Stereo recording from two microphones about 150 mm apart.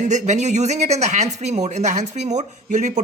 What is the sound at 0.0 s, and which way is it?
A woman's voice, 50° right (ahead or behind).